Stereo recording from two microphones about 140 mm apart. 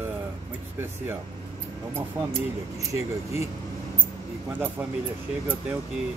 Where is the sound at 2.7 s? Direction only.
20° right (ahead or behind).